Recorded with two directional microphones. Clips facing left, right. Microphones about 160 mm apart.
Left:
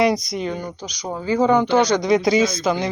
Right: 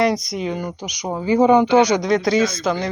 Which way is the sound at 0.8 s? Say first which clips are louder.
Right 3 dB; 20° right (ahead or behind).